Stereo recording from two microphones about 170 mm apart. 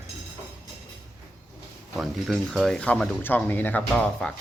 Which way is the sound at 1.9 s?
Centre (ahead or behind).